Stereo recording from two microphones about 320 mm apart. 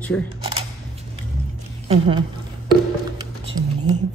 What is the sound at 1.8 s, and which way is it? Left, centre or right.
Speech, centre.